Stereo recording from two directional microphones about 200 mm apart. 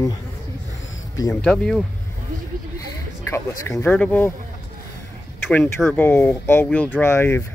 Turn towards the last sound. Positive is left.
turn(degrees=10)  # may be behind; listen again after turning